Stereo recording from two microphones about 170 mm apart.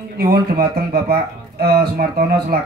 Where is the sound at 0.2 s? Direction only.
65° right (ahead or behind).